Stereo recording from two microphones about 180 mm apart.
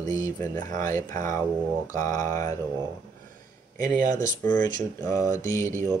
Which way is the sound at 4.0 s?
45° right (ahead or behind).